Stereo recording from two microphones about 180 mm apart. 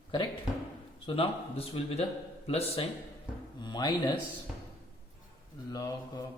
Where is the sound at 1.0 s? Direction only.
30° left (ahead or behind).